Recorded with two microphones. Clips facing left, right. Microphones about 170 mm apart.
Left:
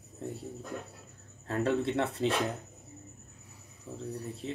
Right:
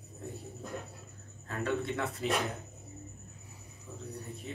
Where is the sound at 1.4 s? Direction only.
30° left (ahead or behind).